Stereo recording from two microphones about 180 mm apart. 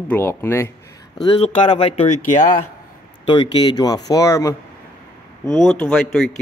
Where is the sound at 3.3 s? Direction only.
25° left (ahead or behind).